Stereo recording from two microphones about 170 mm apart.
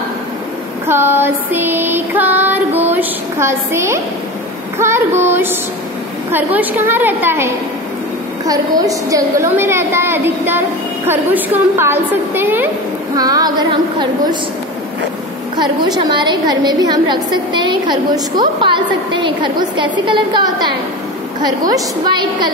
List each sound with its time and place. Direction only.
0.8 s a woman's voice: 15° right (ahead or behind)
15.5 s a woman's voice: 25° right (ahead or behind)